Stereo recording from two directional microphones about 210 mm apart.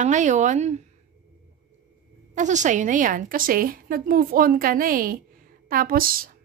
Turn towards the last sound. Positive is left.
turn(degrees=-45)  # may be behind; listen again after turning